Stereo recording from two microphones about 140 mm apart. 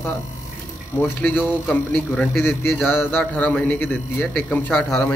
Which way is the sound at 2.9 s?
15° left (ahead or behind).